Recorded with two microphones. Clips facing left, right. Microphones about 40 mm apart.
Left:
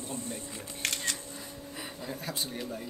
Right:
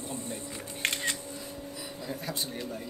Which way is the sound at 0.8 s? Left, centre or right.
Right.